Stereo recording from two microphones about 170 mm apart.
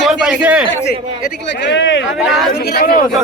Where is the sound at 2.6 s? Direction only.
65° left (ahead or behind).